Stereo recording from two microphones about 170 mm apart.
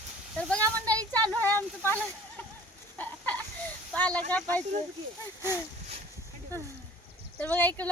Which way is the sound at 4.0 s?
10° left (ahead or behind).